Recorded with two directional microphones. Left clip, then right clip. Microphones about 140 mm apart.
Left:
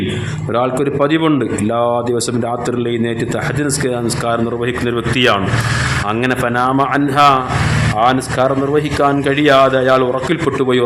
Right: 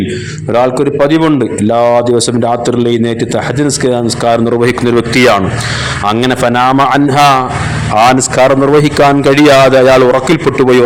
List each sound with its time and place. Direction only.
0.5 s a man's voice: 40° right (ahead or behind)
8.4 s a man's voice: 55° right (ahead or behind)